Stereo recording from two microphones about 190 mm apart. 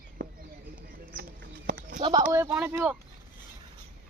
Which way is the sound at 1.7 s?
45° right (ahead or behind).